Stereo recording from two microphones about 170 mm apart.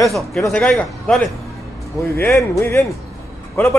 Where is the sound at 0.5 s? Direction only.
5° left (ahead or behind).